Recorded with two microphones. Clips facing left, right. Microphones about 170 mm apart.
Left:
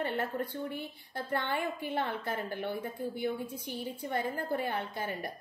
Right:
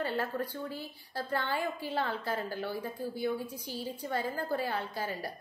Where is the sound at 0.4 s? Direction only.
20° left (ahead or behind).